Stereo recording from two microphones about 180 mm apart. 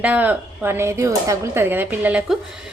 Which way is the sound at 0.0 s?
10° right (ahead or behind).